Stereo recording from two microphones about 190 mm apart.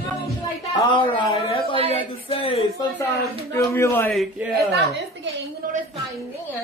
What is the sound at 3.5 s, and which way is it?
Speech, 15° left (ahead or behind).